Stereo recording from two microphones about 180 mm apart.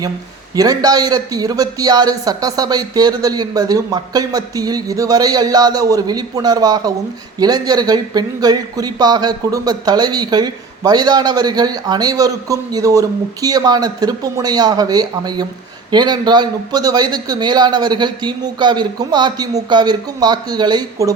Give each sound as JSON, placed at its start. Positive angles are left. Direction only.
{"t": 0.5, "sound": "speech", "side_deg": -20}